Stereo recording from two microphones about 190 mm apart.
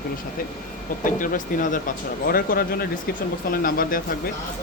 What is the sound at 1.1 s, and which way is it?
Speech, 45° left (ahead or behind).